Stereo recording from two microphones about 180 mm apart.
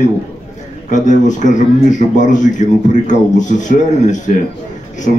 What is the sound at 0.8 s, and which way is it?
Speech, 45° left (ahead or behind).